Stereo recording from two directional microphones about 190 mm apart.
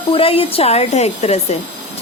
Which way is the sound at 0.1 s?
30° left (ahead or behind).